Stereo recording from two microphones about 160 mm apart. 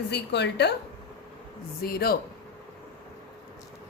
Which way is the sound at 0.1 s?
90° left.